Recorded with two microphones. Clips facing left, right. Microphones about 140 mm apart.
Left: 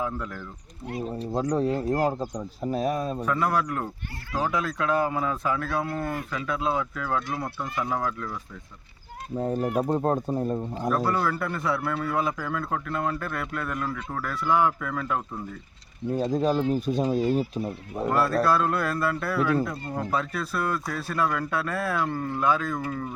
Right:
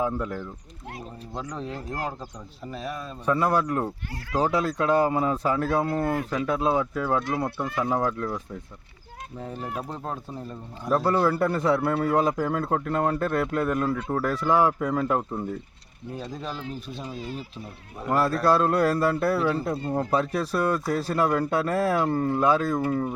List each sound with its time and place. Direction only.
0.0 s speech: 25° right (ahead or behind)
1.3 s speech: 40° left (ahead or behind)
3.2 s speech: 30° right (ahead or behind)
6.6 s speech: 30° right (ahead or behind)
9.4 s speech: 45° left (ahead or behind)
10.9 s speech: 30° right (ahead or behind)
16.1 s speech: 40° left (ahead or behind)
18.4 s speech: 35° right (ahead or behind)